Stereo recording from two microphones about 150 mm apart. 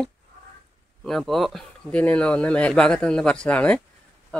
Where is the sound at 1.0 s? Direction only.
Centre (ahead or behind).